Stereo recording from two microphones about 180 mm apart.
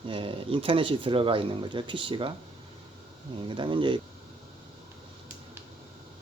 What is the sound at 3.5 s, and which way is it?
Speech, 25° right (ahead or behind).